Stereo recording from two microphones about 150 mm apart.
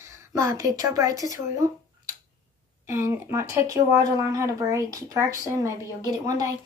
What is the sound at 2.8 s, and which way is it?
Speech, 15° right (ahead or behind).